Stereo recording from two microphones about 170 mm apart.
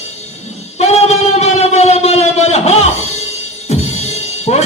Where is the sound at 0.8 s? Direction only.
40° left (ahead or behind).